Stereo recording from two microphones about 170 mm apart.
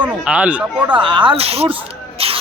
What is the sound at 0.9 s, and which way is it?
A man's voice, 25° right (ahead or behind).